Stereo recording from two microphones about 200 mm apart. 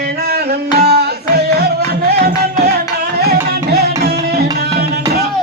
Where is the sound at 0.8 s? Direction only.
55° right (ahead or behind).